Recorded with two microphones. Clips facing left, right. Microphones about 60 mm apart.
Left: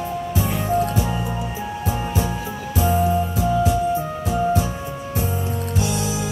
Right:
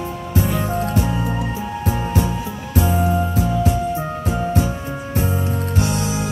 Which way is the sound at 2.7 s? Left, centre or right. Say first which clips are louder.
Even; right.